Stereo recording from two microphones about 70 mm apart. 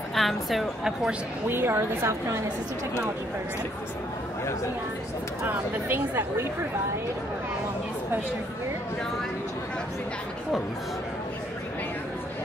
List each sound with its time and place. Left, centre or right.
0.1 s a woman's voice: centre
1.5 s speech: right
5.4 s speech: right